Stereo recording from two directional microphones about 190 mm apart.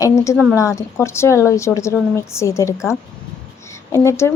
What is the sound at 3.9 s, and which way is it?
Speech, 15° left (ahead or behind).